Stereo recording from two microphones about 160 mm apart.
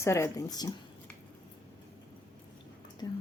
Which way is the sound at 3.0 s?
25° left (ahead or behind).